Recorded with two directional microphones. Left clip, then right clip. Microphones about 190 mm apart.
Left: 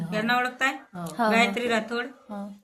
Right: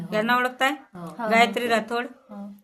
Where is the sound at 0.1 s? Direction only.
65° right (ahead or behind).